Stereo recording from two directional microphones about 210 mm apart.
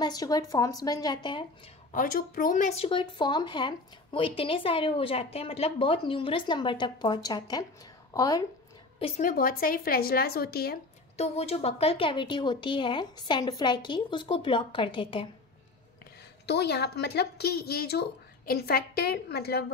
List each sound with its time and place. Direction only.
0.0 s speech: 20° left (ahead or behind)
1.9 s speech: 40° left (ahead or behind); by 8.5 s 15° left (ahead or behind)
9.0 s speech: 35° left (ahead or behind)
11.1 s speech: 30° left (ahead or behind)
16.4 s speech: 55° left (ahead or behind)